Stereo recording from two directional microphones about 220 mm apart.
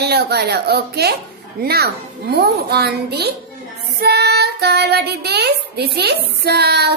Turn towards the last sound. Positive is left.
turn(degrees=-50)  # may be behind; listen again after turning